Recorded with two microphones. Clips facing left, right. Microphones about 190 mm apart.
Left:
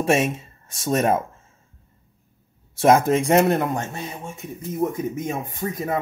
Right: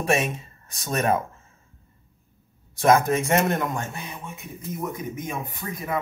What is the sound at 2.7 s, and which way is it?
Speech, 25° left (ahead or behind).